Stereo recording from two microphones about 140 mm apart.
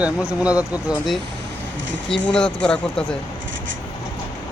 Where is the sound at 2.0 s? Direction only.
5° left (ahead or behind).